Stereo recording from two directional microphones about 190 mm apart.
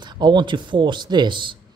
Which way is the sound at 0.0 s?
25° right (ahead or behind).